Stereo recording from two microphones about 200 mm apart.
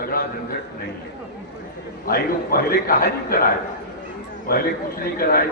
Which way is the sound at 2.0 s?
45° left (ahead or behind).